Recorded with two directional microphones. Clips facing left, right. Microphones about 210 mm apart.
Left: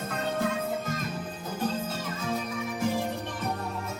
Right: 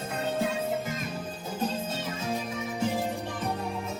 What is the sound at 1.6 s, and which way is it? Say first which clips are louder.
Music: even; 25° right (ahead or behind).